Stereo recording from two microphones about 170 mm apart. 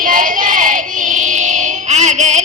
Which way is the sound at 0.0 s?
50° right (ahead or behind).